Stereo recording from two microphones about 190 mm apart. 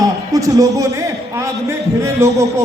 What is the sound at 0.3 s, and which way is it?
Speech, 15° right (ahead or behind).